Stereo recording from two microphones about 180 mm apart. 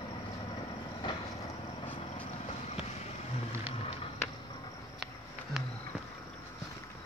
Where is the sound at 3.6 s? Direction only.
35° left (ahead or behind).